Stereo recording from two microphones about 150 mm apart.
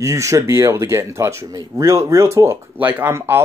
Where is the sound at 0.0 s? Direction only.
20° right (ahead or behind).